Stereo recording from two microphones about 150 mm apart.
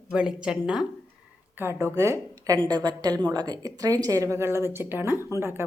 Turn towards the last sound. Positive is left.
turn(degrees=-15)  # may be behind; listen again after turning